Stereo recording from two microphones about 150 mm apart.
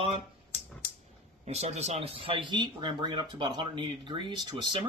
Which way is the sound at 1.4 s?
45° right (ahead or behind).